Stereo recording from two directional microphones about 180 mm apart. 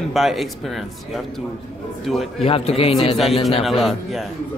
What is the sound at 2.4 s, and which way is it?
Speech, 35° left (ahead or behind).